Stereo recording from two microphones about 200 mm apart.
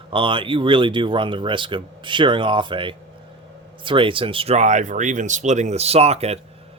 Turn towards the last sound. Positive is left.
turn(degrees=-30)  # may be behind; listen again after turning